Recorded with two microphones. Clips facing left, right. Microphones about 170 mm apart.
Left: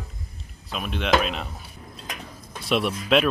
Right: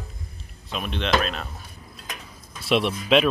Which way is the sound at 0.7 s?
5° left (ahead or behind).